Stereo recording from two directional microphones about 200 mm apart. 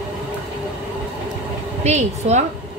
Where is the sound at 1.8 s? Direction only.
35° right (ahead or behind).